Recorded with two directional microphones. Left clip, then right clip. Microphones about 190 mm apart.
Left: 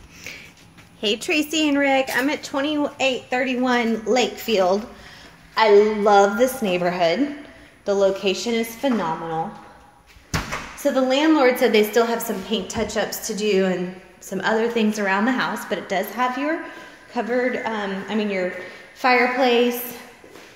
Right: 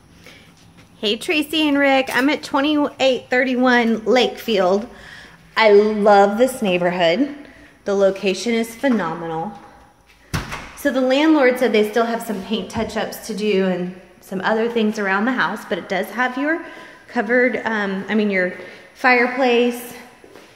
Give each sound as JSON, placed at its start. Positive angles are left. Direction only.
{"t": 1.0, "sound": "a woman's voice", "side_deg": -5}
{"t": 10.8, "sound": "a woman's voice", "side_deg": -15}
{"t": 11.5, "sound": "a woman's voice", "side_deg": -5}
{"t": 18.9, "sound": "a woman's voice", "side_deg": -10}